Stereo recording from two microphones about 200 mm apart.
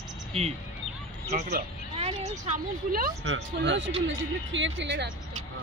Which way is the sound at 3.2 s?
60° right (ahead or behind).